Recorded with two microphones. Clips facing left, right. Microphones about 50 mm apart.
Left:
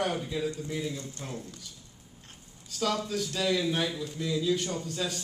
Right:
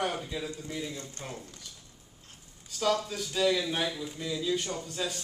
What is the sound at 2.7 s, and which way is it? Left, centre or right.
A man's voice, centre.